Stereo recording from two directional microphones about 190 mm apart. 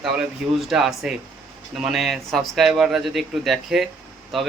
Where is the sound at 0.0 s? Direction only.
Centre (ahead or behind).